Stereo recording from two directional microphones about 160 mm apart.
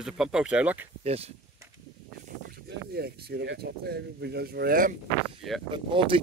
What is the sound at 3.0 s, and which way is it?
Speech, 85° right.